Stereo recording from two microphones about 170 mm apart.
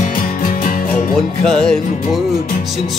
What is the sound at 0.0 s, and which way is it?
Music, 55° left (ahead or behind).